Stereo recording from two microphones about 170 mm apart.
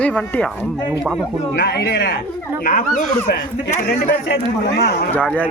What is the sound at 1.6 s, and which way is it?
Speech, 70° left (ahead or behind).